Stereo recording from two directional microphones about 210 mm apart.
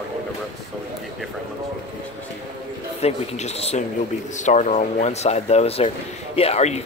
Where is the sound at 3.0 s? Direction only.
30° left (ahead or behind).